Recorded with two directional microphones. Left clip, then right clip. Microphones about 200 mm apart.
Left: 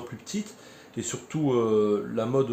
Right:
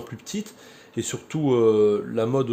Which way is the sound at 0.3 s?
50° right (ahead or behind).